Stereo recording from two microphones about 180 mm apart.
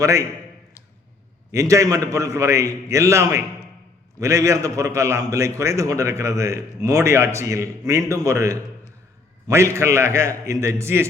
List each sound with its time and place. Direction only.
0.0 s a man's voice: 15° right (ahead or behind)
1.5 s a man's voice: 15° right (ahead or behind)